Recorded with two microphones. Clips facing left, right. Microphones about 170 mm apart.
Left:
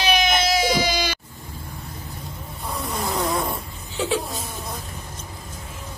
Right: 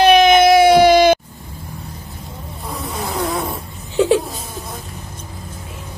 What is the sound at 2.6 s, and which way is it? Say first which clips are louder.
Snake: right 1 dB; centre (ahead or behind).